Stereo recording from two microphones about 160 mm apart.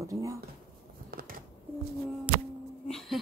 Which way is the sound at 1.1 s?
70° right (ahead or behind).